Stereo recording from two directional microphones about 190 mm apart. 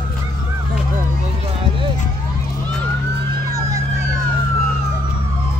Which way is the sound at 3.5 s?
20° right (ahead or behind).